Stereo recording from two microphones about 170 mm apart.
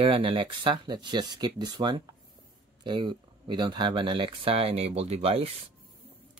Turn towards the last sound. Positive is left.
turn(degrees=-35)  # may be behind; listen again after turning